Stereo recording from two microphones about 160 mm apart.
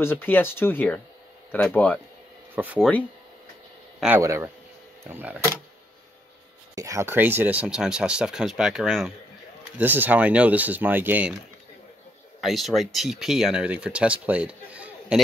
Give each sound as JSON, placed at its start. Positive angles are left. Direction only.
{"t": 0.0, "sound": "speech", "side_deg": 15}
{"t": 2.5, "sound": "speech", "side_deg": -10}
{"t": 4.2, "sound": "speech", "side_deg": -15}
{"t": 6.7, "sound": "speech", "side_deg": -20}
{"t": 12.4, "sound": "speech", "side_deg": 0}